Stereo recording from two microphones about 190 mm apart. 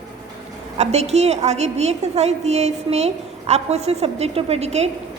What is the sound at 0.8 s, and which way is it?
A woman's voice, 35° right (ahead or behind).